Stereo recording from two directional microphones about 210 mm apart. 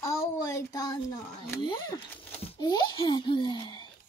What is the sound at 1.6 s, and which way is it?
A child's voice, 20° left (ahead or behind).